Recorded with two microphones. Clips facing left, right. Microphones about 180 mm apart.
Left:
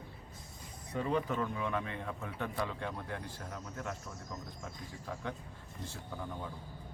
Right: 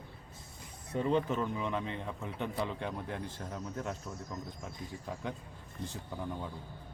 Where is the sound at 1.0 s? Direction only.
25° right (ahead or behind).